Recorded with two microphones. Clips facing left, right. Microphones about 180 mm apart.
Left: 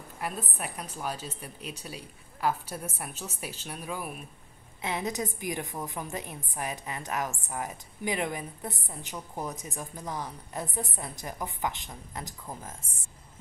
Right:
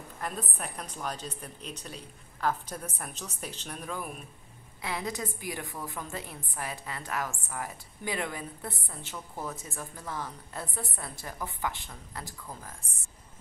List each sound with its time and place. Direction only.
0.2 s a woman's voice: 10° left (ahead or behind)
4.8 s a woman's voice: 20° left (ahead or behind)